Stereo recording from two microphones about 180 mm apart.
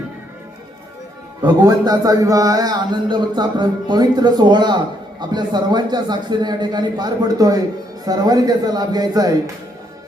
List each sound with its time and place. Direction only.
1.4 s speech: 20° right (ahead or behind)